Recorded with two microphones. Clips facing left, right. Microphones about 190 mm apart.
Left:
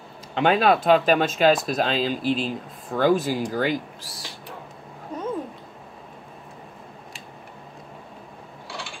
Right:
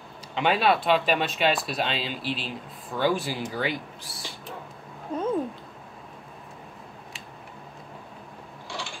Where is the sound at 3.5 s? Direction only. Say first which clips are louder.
Left 5 dB; 45° left (ahead or behind).